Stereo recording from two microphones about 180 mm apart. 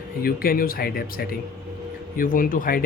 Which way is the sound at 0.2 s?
55° left (ahead or behind).